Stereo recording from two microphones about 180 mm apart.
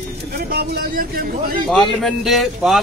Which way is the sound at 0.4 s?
60° right (ahead or behind).